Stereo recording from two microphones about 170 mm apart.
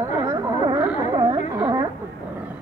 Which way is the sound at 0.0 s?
20° right (ahead or behind).